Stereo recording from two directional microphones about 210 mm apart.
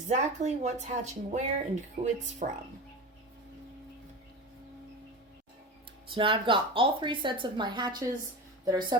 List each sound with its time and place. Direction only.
0.0 s speech: 35° right (ahead or behind)
6.1 s a woman's voice: 25° right (ahead or behind)